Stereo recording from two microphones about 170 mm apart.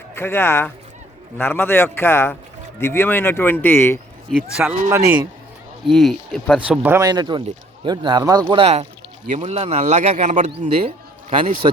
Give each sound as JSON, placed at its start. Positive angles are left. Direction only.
{"t": 0.1, "sound": "speech", "side_deg": 15}
{"t": 4.3, "sound": "speech", "side_deg": 0}
{"t": 4.9, "sound": "a man's voice", "side_deg": -15}
{"t": 5.9, "sound": "speech", "side_deg": 0}
{"t": 6.7, "sound": "a man's voice", "side_deg": -15}
{"t": 7.1, "sound": "speech", "side_deg": -25}
{"t": 8.6, "sound": "speech", "side_deg": -40}
{"t": 10.8, "sound": "a man's voice", "side_deg": -35}